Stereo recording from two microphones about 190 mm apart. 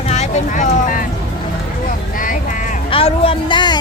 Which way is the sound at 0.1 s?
40° left (ahead or behind).